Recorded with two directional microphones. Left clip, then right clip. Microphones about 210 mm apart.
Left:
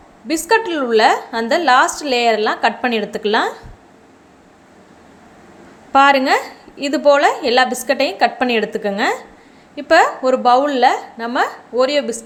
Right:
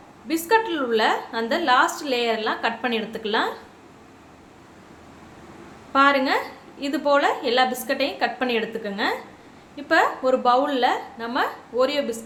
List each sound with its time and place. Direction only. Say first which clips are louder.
0.3 s a woman's voice: left 5 dB; 30° left (ahead or behind)
5.9 s a woman's voice: left 7 dB; 35° left (ahead or behind)